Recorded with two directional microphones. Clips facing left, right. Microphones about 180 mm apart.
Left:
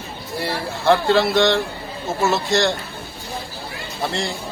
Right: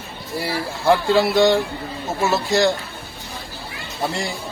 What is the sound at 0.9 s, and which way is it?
Speech, 5° right (ahead or behind).